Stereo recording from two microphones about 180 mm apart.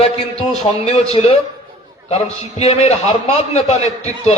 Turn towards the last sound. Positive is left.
turn(degrees=35)  # may be behind; listen again after turning